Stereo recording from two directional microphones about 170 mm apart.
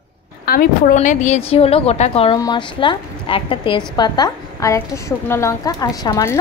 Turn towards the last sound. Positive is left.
turn(degrees=20)  # may be behind; listen again after turning